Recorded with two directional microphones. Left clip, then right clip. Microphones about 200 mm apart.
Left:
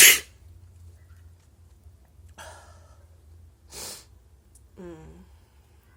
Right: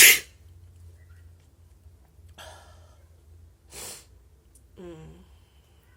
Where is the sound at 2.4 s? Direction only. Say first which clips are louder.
Left 1 dB; 10° left (ahead or behind).